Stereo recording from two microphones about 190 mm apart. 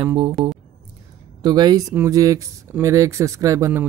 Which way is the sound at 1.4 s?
20° right (ahead or behind).